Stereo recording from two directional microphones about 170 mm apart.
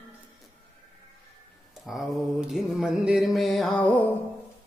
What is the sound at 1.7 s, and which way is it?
Mantra, centre (ahead or behind).